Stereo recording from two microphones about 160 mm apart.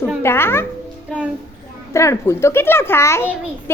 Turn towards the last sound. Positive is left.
turn(degrees=15)  # may be behind; listen again after turning